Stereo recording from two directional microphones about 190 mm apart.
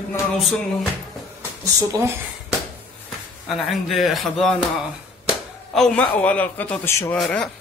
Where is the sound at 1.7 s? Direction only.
15° right (ahead or behind).